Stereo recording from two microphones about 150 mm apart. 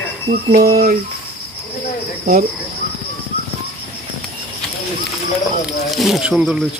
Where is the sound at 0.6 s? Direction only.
90° right.